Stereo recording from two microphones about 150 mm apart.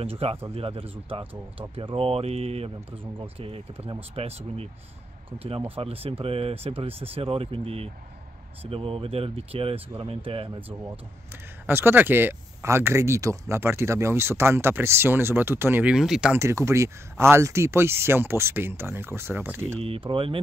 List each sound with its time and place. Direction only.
0.0 s speech: 40° right (ahead or behind)
5.8 s speech: 40° right (ahead or behind)
11.6 s speech: 15° right (ahead or behind)
16.3 s speech: 20° right (ahead or behind)
19.8 s speech: 35° right (ahead or behind)